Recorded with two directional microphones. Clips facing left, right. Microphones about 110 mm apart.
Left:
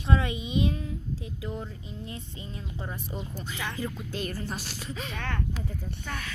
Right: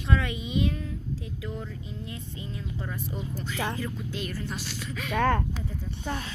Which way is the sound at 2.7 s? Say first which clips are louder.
Right 1 dB; 20° left (ahead or behind).